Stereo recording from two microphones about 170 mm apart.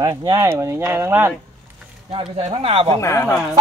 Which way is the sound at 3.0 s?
15° left (ahead or behind).